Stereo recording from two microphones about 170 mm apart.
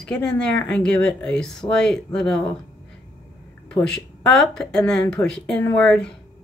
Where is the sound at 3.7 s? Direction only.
5° left (ahead or behind).